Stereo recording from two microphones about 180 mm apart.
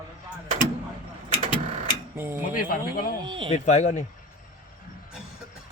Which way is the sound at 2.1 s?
15° right (ahead or behind).